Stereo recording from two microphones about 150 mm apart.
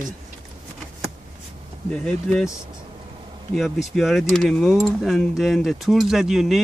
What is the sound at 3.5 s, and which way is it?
Speech, centre (ahead or behind).